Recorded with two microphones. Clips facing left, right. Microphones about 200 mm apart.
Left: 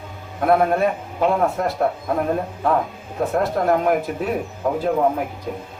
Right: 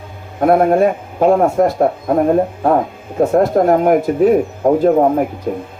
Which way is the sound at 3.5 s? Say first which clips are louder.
Right 7 dB; 50° right (ahead or behind).